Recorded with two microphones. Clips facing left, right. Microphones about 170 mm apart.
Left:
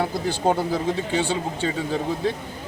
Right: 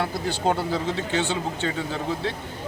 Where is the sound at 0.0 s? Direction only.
15° left (ahead or behind).